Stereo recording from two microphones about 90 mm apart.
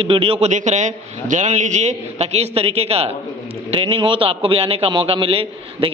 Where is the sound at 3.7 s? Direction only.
90° right.